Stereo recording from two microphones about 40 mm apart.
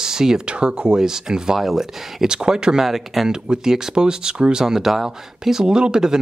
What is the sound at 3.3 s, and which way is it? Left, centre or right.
Speech, centre.